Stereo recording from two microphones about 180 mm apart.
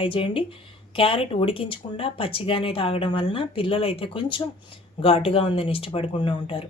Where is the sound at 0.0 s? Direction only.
30° left (ahead or behind).